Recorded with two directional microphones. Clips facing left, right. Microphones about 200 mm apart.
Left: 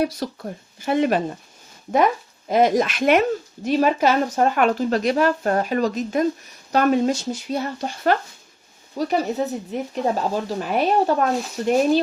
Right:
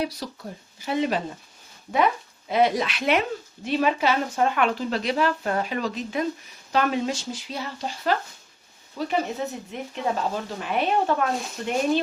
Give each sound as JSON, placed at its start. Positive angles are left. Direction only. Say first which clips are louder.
{"t": 0.0, "sound": "speech", "louder": "left 6 dB", "side_deg": 50}
{"t": 2.5, "sound": "speech", "louder": "left 4 dB", "side_deg": 45}
{"t": 9.0, "sound": "speech", "louder": "left 5 dB", "side_deg": 40}